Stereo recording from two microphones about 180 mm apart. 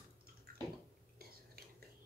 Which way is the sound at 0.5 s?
55° right (ahead or behind).